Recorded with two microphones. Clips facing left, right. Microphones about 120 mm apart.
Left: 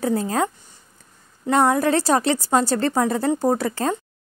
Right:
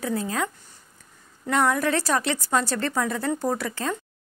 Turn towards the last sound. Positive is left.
turn(degrees=35)  # may be behind; listen again after turning